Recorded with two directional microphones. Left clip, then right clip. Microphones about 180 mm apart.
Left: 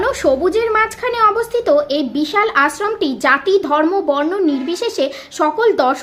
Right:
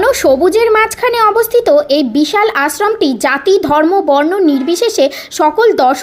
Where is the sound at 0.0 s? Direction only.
35° right (ahead or behind).